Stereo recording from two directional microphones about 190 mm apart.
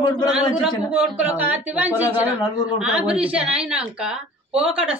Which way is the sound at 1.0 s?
5° right (ahead or behind).